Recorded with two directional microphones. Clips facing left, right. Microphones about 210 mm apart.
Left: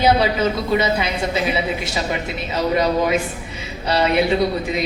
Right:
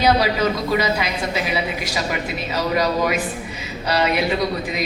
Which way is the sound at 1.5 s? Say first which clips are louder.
Left 2 dB; 25° left (ahead or behind).